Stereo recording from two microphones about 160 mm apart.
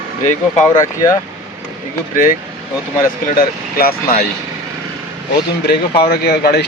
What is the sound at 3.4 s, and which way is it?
Speech, 70° left (ahead or behind).